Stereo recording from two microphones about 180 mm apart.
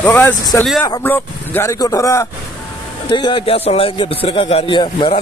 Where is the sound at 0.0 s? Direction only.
10° left (ahead or behind).